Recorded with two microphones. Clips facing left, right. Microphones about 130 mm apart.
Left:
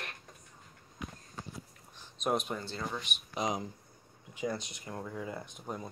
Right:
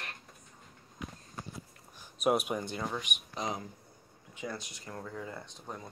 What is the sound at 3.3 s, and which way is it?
Speech, 15° left (ahead or behind).